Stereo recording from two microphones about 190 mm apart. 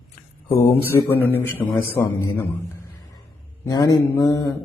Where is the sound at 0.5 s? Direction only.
10° left (ahead or behind).